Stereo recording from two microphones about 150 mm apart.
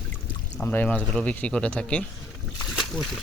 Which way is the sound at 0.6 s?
10° left (ahead or behind).